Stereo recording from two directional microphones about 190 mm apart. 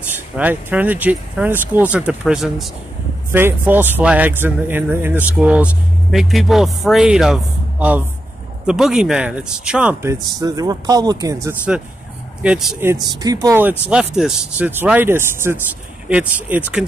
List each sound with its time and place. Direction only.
0.1 s speech: 10° right (ahead or behind)
10.4 s speech: 20° right (ahead or behind)
12.4 s speech: centre (ahead or behind)
13.1 s speech: 20° right (ahead or behind)